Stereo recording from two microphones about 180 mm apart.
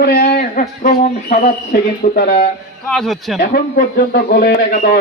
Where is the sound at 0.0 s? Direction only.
55° left (ahead or behind).